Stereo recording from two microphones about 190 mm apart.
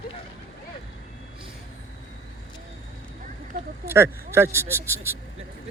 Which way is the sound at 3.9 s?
10° right (ahead or behind).